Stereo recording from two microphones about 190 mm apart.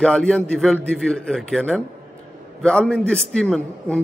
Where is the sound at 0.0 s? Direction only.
5° left (ahead or behind).